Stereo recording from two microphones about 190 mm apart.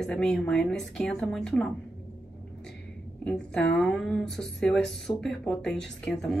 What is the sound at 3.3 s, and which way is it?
Speech, 5° left (ahead or behind).